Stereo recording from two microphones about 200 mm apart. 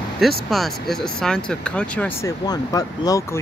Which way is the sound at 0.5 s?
Centre (ahead or behind).